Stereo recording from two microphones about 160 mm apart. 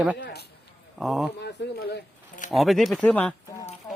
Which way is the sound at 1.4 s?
90° left.